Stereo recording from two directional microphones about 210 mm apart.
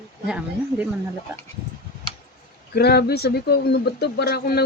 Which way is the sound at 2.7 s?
50° left (ahead or behind).